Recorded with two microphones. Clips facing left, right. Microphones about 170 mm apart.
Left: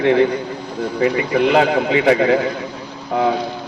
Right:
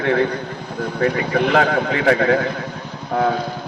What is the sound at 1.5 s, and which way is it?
Speech, 10° left (ahead or behind).